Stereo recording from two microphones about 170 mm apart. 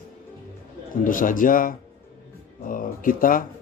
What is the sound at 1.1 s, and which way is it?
Speech, 50° left (ahead or behind).